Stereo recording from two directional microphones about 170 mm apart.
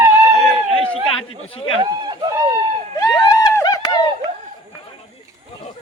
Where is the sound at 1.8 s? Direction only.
25° right (ahead or behind).